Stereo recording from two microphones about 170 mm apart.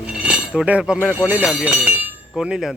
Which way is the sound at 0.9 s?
10° left (ahead or behind).